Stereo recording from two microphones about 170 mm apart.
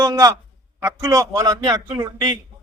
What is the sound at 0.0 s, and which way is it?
A man's voice, 20° right (ahead or behind).